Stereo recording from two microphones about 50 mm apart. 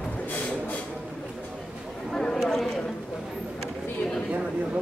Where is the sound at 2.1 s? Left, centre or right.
Centre.